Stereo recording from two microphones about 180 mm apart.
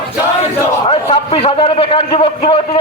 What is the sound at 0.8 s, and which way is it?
A man's voice, 30° left (ahead or behind).